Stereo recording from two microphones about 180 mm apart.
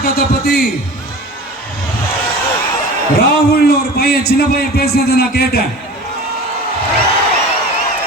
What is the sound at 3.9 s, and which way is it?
A man's voice, 60° left (ahead or behind).